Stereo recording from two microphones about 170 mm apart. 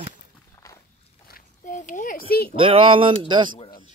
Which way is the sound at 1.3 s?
50° left (ahead or behind).